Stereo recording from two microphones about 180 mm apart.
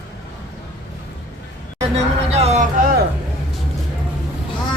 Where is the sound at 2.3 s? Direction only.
35° right (ahead or behind).